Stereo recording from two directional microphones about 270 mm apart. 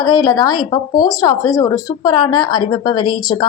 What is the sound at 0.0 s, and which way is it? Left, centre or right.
A woman's voice, centre.